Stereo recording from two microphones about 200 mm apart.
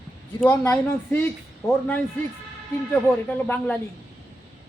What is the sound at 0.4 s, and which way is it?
Speech, 10° left (ahead or behind).